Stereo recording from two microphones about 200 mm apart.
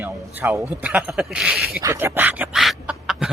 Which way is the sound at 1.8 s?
15° right (ahead or behind).